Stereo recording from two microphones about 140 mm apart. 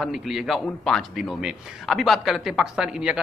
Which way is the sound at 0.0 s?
Centre (ahead or behind).